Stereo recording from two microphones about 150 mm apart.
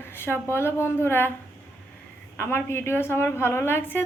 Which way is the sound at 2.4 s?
15° left (ahead or behind).